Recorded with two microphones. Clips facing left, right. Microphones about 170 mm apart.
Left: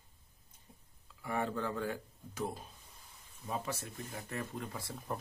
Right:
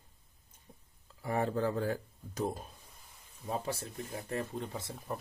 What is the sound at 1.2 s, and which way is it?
Speech, 35° right (ahead or behind).